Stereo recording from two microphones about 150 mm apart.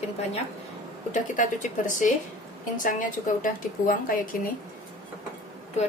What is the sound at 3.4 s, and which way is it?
Speech, 70° left (ahead or behind).